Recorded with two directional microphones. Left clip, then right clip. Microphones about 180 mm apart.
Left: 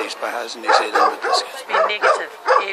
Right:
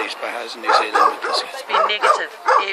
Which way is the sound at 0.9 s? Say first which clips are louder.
Right 1 dB; 50° right (ahead or behind).